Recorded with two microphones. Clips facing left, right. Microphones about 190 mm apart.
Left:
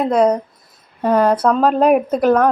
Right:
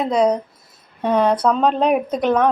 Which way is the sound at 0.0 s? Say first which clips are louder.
Left 3 dB; 5° left (ahead or behind).